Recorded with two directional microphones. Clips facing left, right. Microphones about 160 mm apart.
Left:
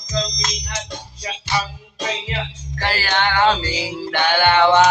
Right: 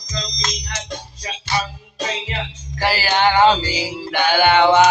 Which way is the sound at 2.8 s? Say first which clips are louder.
Right 4 dB; 10° right (ahead or behind).